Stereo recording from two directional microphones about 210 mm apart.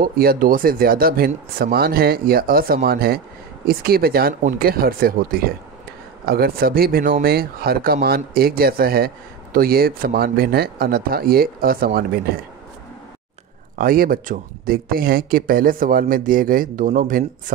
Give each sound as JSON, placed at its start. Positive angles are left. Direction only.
{"t": 0.0, "sound": "speech", "side_deg": -45}
{"t": 13.7, "sound": "speech", "side_deg": -45}